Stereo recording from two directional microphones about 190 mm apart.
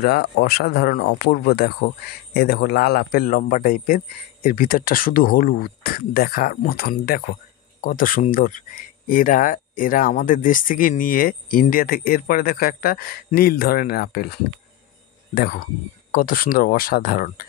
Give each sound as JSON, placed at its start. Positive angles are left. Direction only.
{"t": 0.0, "sound": "speech", "side_deg": 55}
{"t": 15.3, "sound": "speech", "side_deg": 50}